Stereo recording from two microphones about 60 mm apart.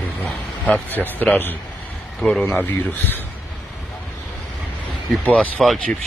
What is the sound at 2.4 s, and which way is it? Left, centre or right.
Speech, left.